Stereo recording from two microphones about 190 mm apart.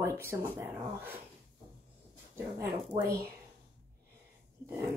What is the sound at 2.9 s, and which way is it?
Speech, 25° right (ahead or behind).